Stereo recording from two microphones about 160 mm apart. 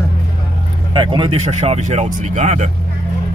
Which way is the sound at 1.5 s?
45° right (ahead or behind).